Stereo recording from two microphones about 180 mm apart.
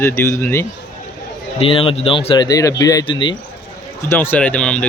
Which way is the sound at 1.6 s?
30° left (ahead or behind).